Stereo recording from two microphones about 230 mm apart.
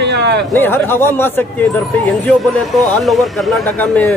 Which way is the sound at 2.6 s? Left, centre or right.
Centre.